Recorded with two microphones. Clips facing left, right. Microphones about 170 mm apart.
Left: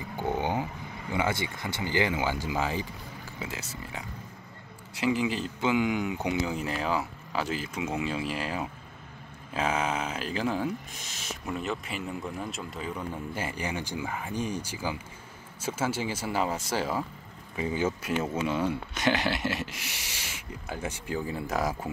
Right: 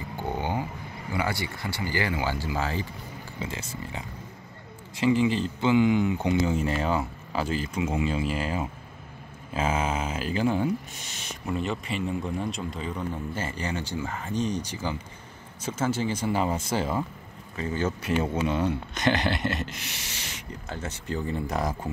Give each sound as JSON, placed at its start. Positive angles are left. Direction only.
{"t": 0.2, "sound": "a sound", "side_deg": 15}
{"t": 1.1, "sound": "speech", "side_deg": 20}
{"t": 5.0, "sound": "speech", "side_deg": 5}
{"t": 17.6, "sound": "speech", "side_deg": 10}
{"t": 18.0, "sound": "speech", "side_deg": 0}